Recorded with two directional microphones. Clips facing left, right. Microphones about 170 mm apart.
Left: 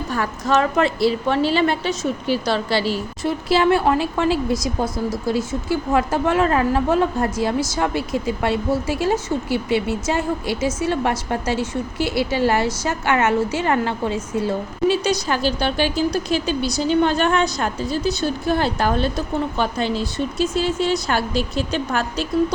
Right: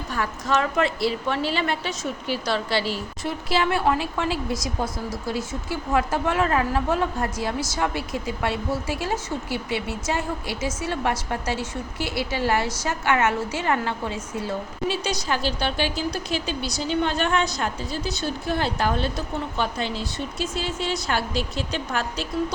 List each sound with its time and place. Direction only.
0.1 s a woman's voice: 35° left (ahead or behind)
14.8 s a woman's voice: 45° left (ahead or behind)